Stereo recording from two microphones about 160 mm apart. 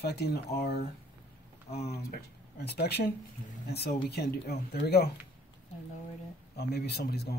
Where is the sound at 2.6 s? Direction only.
90° left.